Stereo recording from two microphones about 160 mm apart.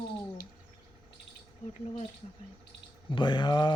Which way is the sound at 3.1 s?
30° left (ahead or behind).